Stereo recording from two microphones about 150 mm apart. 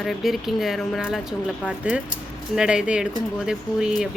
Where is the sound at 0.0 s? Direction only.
Centre (ahead or behind).